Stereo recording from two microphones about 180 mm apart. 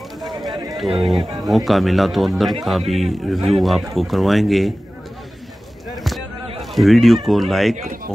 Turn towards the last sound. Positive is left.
turn(degrees=0)  # may be behind; listen again after turning